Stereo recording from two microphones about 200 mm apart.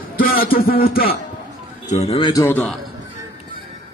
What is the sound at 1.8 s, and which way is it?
A man's voice, 35° left (ahead or behind).